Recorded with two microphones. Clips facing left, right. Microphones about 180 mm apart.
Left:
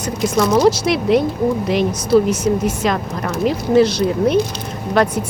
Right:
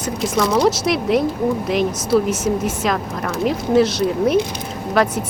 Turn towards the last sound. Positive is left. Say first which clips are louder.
# left 1 dB
turn(degrees=0)  # may be behind; listen again after turning